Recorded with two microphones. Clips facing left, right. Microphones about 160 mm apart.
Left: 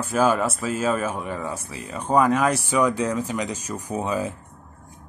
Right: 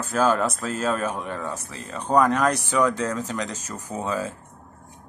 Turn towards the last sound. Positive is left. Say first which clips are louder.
# left 2 dB
turn(degrees=15)  # may be behind; listen again after turning